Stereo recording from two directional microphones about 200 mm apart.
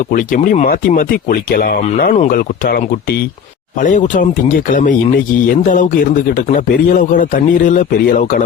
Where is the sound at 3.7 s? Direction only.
40° left (ahead or behind).